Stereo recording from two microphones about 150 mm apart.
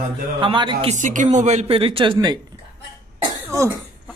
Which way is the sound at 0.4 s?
35° right (ahead or behind).